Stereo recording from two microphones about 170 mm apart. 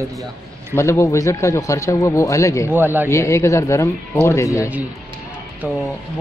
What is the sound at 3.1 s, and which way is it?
Speech, 15° left (ahead or behind).